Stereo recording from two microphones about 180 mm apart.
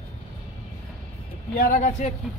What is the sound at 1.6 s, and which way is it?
Speech, 45° left (ahead or behind).